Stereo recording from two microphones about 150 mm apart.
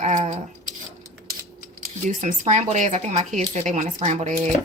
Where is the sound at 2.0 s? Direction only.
55° right (ahead or behind).